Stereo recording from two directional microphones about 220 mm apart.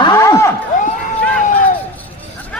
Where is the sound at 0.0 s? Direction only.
15° left (ahead or behind).